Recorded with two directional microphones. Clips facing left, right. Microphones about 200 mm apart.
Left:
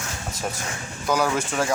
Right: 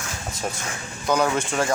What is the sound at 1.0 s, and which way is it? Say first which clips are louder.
Speech: right 1 dB; 5° left (ahead or behind).